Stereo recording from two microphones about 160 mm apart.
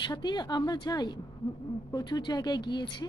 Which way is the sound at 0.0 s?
25° left (ahead or behind).